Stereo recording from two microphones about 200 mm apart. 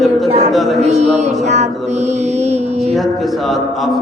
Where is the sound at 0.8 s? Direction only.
30° right (ahead or behind).